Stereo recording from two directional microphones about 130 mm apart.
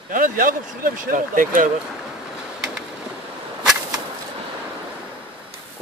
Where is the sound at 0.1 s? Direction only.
90° right.